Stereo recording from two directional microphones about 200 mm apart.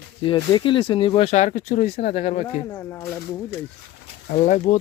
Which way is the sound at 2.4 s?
15° left (ahead or behind).